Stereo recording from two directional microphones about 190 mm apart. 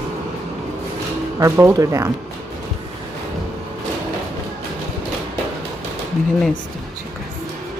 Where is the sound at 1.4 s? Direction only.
15° right (ahead or behind).